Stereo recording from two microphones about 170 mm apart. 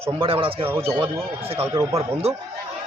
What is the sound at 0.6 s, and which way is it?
Speech, 15° right (ahead or behind).